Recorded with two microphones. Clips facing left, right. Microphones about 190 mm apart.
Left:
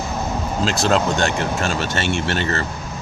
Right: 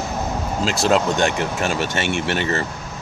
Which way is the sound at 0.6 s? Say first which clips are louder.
Right 1 dB; 10° right (ahead or behind).